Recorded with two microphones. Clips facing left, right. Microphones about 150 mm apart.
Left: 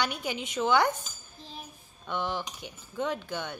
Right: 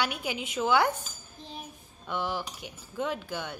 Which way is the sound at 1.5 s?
10° right (ahead or behind).